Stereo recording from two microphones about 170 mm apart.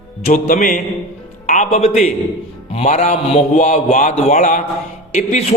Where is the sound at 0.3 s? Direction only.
50° left (ahead or behind).